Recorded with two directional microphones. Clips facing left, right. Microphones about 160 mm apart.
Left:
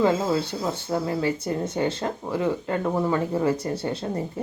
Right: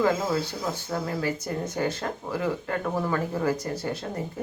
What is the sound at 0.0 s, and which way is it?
Speech, 25° left (ahead or behind).